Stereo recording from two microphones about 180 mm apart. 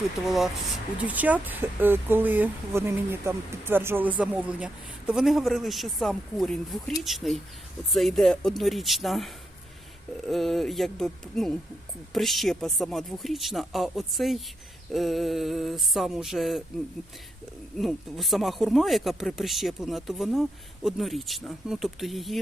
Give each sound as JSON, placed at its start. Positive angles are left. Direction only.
{"t": 0.3, "sound": "speech", "side_deg": 0}
{"t": 17.7, "sound": "speech", "side_deg": 0}